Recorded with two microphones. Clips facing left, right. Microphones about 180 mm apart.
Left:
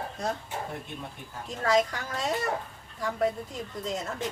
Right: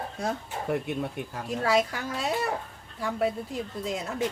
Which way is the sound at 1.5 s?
10° right (ahead or behind).